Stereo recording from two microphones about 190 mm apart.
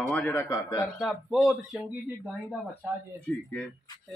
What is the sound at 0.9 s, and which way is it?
Speech, centre (ahead or behind).